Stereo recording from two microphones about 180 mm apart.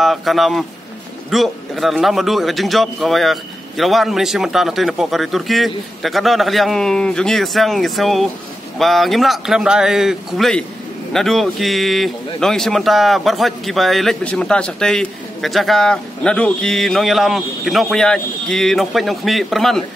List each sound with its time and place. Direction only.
0.0 s a man's voice: centre (ahead or behind)